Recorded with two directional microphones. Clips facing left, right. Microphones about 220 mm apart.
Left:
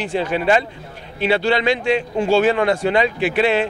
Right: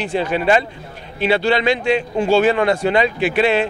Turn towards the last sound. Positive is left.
turn(degrees=-15)  # may be behind; listen again after turning